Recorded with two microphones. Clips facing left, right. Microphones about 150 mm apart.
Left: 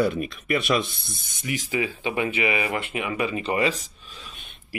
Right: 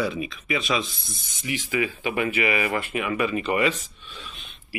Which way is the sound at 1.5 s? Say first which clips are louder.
Even; 40° left (ahead or behind).